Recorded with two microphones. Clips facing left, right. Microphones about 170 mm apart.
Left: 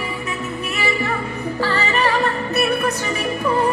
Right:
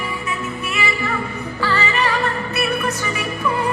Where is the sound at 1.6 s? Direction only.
40° left (ahead or behind).